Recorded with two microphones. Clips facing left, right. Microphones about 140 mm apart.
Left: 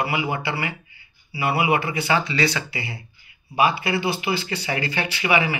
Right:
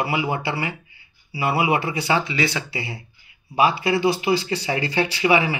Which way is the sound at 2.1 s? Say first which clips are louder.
Left 1 dB; 20° right (ahead or behind).